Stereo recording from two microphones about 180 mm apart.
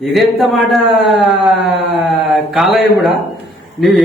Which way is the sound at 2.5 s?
Centre (ahead or behind).